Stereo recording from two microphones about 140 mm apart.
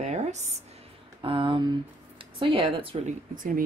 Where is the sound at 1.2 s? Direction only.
35° right (ahead or behind).